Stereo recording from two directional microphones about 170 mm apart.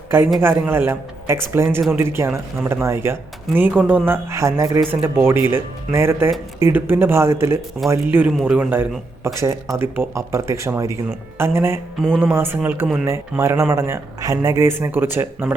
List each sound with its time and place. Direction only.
0.3 s speech: 15° right (ahead or behind)
11.9 s speech: 5° left (ahead or behind)
12.2 s speech: 15° right (ahead or behind)